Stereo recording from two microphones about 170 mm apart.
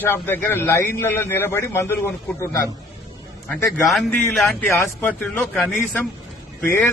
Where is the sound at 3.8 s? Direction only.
Centre (ahead or behind).